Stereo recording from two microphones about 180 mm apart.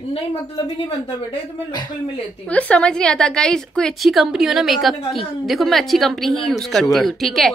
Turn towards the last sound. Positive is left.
turn(degrees=0)  # may be behind; listen again after turning